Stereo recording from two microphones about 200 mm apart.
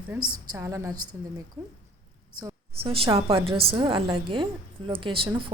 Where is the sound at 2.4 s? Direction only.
25° right (ahead or behind).